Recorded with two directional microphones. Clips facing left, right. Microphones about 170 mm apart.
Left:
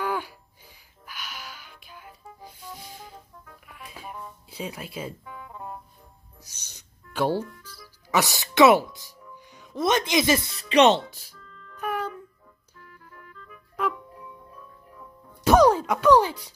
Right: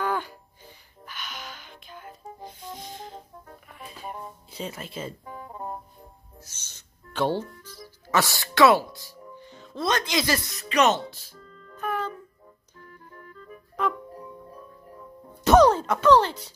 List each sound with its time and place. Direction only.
0.0 s music: 10° left (ahead or behind)
4.6 s speech: 10° left (ahead or behind)
5.2 s music: 40° right (ahead or behind)
6.4 s music: 10° left (ahead or behind)
7.4 s music: 35° right (ahead or behind)
8.1 s speech: 15° left (ahead or behind)
10.7 s speech: 30° left (ahead or behind)
11.3 s music: 40° right (ahead or behind)
11.8 s music: 10° left (ahead or behind)
13.1 s music: 40° right (ahead or behind)
13.8 s music: 10° left (ahead or behind)
14.1 s music: 40° right (ahead or behind)
15.4 s music: 10° left (ahead or behind)